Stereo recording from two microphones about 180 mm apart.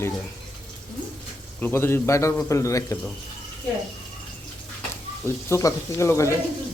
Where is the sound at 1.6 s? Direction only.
15° left (ahead or behind).